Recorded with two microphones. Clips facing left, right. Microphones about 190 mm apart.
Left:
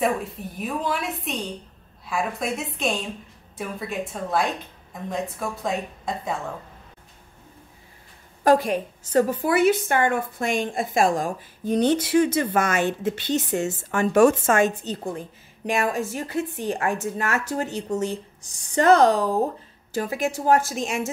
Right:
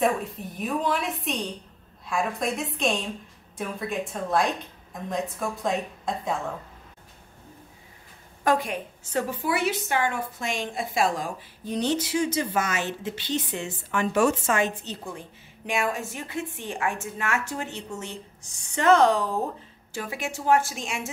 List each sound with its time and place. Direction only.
0.0 s a woman's voice: centre (ahead or behind)
8.5 s a woman's voice: 40° left (ahead or behind)